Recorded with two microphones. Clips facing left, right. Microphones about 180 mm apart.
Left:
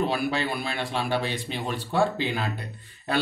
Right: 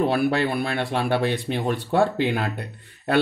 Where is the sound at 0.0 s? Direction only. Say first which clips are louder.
Right 5 dB; 60° right (ahead or behind).